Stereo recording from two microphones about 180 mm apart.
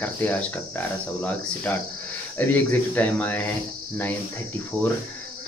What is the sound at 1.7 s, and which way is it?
Speech, 10° left (ahead or behind).